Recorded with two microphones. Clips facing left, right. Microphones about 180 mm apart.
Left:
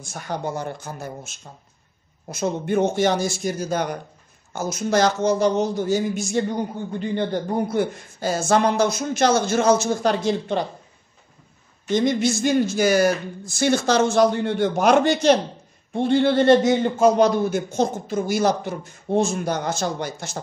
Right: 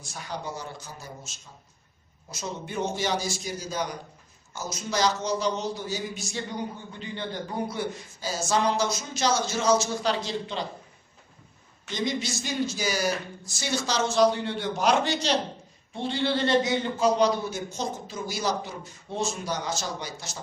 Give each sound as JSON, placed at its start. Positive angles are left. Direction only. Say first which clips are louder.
{"t": 0.0, "sound": "a man's voice", "louder": "left 7 dB", "side_deg": 50}
{"t": 11.9, "sound": "a man's voice", "louder": "left 10 dB", "side_deg": 50}